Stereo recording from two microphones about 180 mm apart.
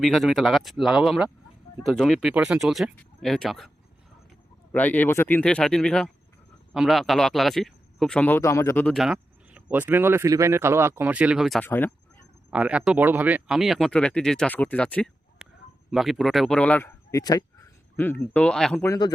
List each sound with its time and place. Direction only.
0.0 s speech: centre (ahead or behind)
4.7 s speech: 10° left (ahead or behind)
11.6 s speech: 10° left (ahead or behind)
12.5 s speech: 5° right (ahead or behind); by 16.9 s 10° left (ahead or behind)
17.1 s speech: 20° left (ahead or behind)
18.9 s speech: 25° left (ahead or behind)